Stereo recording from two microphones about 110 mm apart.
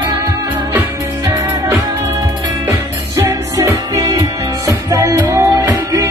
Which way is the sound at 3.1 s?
25° right (ahead or behind).